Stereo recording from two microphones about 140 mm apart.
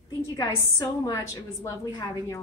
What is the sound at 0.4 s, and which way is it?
A woman's voice, 25° left (ahead or behind).